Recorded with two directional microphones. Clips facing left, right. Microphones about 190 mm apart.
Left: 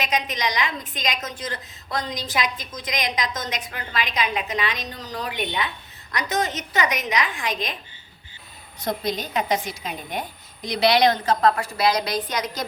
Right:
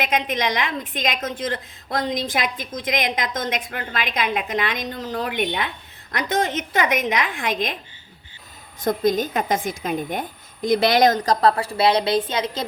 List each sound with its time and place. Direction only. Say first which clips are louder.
0.0 s a woman's voice: right 3 dB; 55° right (ahead or behind)
8.8 s a woman's voice: right 7 dB; 50° right (ahead or behind); by 12.6 s 25° right (ahead or behind)